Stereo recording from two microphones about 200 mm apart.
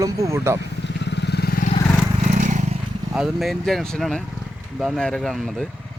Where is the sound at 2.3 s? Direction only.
40° right (ahead or behind).